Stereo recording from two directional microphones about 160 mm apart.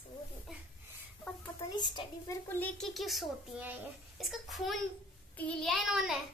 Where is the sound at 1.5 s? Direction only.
25° left (ahead or behind).